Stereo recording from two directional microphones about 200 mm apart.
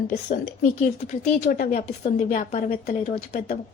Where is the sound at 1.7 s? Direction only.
40° left (ahead or behind).